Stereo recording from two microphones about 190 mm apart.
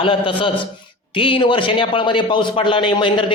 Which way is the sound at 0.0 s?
25° left (ahead or behind).